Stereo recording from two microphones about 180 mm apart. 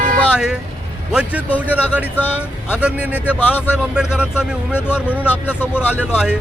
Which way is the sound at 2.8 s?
5° right (ahead or behind).